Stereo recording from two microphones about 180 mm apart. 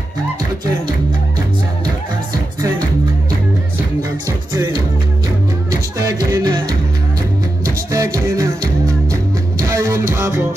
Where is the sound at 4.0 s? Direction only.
20° right (ahead or behind).